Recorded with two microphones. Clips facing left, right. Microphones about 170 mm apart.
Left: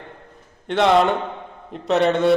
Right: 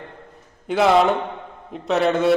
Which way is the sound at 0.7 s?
5° right (ahead or behind).